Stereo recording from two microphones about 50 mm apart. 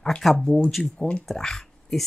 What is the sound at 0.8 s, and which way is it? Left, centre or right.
Speech, left.